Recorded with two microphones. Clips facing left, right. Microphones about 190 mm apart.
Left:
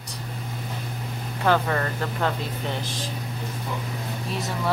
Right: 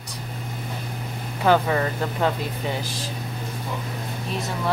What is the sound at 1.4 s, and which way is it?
Speech, 10° right (ahead or behind).